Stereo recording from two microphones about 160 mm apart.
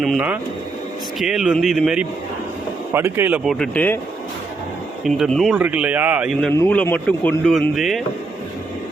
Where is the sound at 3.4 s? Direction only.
5° left (ahead or behind).